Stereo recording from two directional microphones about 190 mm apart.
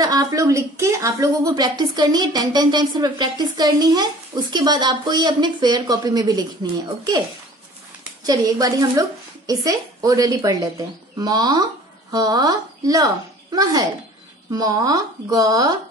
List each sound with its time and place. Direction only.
0.0 s a woman's voice: 20° right (ahead or behind)
8.3 s a woman's voice: 20° right (ahead or behind)